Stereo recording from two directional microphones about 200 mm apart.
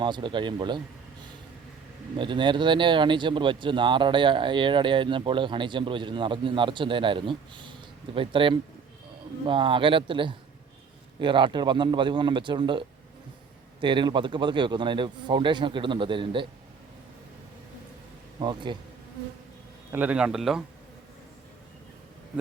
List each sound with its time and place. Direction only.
0.0 s speech: 25° right (ahead or behind)
2.1 s speech: 25° right (ahead or behind)
13.8 s speech: 25° right (ahead or behind)
18.3 s speech: 25° right (ahead or behind)
19.9 s speech: 5° right (ahead or behind)